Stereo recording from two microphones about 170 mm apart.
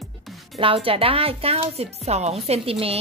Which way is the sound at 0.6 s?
30° right (ahead or behind).